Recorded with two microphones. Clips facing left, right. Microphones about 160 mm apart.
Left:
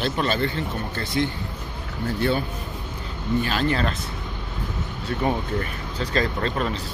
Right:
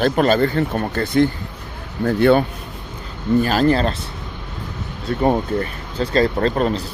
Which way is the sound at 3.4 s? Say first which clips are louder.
Right 7 dB; 40° right (ahead or behind).